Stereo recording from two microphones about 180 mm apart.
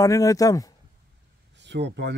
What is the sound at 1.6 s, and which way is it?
Speech, 75° right (ahead or behind).